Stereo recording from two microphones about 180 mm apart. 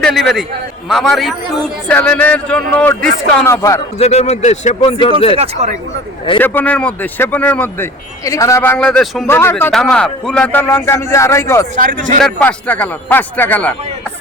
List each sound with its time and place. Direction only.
0.0 s a man's voice: centre (ahead or behind); by 3.8 s 15° left (ahead or behind)
3.9 s speech: 35° left (ahead or behind)
4.8 s speech: 30° left (ahead or behind)
5.4 s speech: 40° right (ahead or behind)
6.4 s speech: 10° left (ahead or behind)